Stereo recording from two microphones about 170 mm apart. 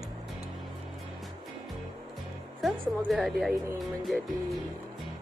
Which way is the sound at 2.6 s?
Centre (ahead or behind).